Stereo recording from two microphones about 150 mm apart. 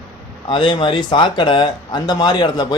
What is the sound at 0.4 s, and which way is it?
A man's voice, 35° left (ahead or behind).